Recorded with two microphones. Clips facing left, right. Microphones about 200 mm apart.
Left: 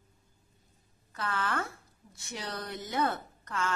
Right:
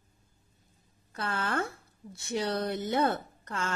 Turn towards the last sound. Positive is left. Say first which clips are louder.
# left 1 dB
turn(degrees=-30)  # may be behind; listen again after turning